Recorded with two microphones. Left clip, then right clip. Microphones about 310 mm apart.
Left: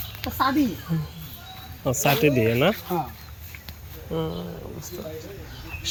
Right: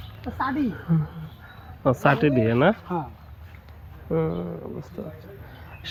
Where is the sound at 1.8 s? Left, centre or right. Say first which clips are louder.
Right 1 dB; centre.